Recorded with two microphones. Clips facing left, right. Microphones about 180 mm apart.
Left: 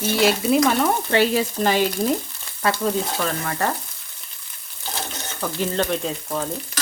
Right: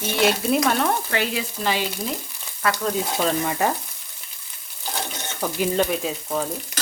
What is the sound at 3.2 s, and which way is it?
Speech, 15° right (ahead or behind).